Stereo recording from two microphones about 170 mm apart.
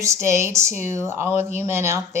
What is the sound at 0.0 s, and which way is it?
Speech, 15° right (ahead or behind).